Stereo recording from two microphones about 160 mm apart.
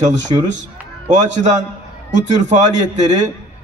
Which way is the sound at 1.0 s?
50° right (ahead or behind).